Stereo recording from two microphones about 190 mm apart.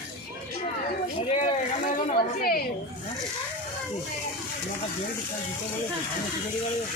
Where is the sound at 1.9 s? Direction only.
50° left (ahead or behind).